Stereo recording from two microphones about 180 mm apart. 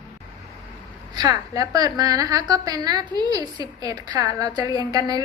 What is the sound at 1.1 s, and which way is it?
A woman's voice, 20° right (ahead or behind).